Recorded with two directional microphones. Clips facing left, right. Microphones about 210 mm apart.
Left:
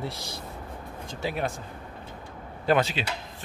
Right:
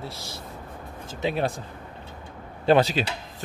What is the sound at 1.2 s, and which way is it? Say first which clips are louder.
Speech: right 4 dB; 25° right (ahead or behind).